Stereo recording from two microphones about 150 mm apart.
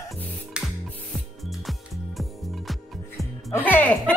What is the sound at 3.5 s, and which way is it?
Speech, 15° left (ahead or behind).